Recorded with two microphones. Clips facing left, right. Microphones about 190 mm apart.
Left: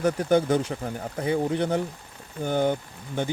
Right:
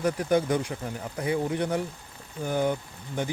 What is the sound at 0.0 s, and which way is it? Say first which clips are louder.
Speech: left 3 dB; 30° left (ahead or behind).